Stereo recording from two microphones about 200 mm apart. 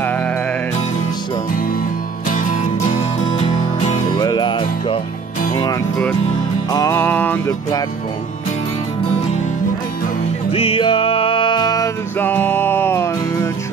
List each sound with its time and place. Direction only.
2.2 s music: 40° left (ahead or behind)
4.2 s music: 20° left (ahead or behind)
10.5 s music: 30° left (ahead or behind); by 13.5 s 10° left (ahead or behind)